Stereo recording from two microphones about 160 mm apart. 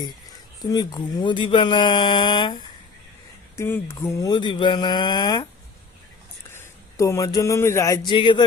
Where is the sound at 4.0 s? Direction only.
20° left (ahead or behind).